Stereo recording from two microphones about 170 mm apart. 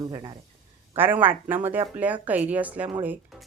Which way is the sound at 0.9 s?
10° right (ahead or behind).